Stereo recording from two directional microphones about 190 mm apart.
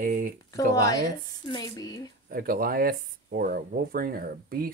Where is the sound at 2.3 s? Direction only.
50° right (ahead or behind).